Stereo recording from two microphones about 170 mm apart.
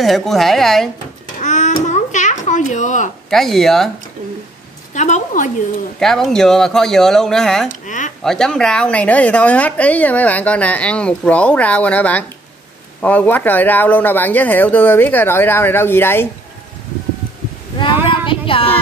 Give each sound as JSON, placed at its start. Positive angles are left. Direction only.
{"t": 0.0, "sound": "speech", "side_deg": 0}
{"t": 1.4, "sound": "a sound", "side_deg": 45}
{"t": 3.3, "sound": "speech", "side_deg": 0}
{"t": 4.9, "sound": "a woman's voice", "side_deg": 45}
{"t": 5.9, "sound": "speech", "side_deg": 0}
{"t": 7.8, "sound": "a sound", "side_deg": 45}
{"t": 8.2, "sound": "a woman's voice", "side_deg": 5}
{"t": 18.2, "sound": "child singing", "side_deg": 30}